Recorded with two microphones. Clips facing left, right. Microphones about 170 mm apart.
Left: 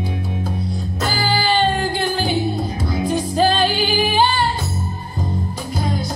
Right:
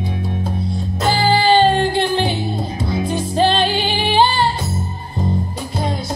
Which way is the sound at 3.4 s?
30° right (ahead or behind).